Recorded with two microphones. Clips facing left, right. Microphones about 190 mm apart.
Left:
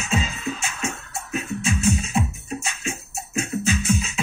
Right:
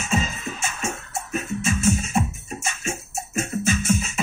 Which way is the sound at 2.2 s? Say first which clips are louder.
Even; 45° right (ahead or behind).